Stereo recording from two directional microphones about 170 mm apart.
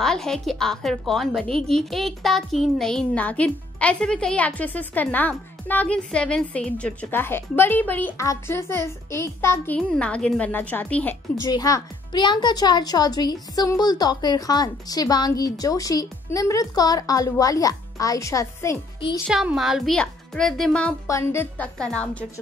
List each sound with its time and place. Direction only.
0.0 s a woman's voice: 5° left (ahead or behind)
11.4 s speech: 20° left (ahead or behind)
19.2 s a woman's voice: 5° right (ahead or behind)
21.1 s a woman's voice: 15° left (ahead or behind)